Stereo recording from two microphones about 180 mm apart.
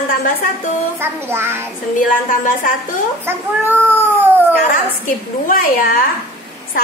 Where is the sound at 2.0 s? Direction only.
50° left (ahead or behind).